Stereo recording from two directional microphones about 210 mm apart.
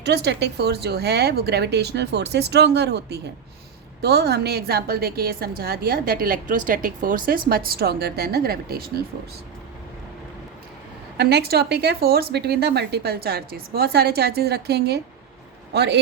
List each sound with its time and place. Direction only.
0.0 s a woman's voice: 55° right (ahead or behind)
11.2 s a woman's voice: 50° right (ahead or behind)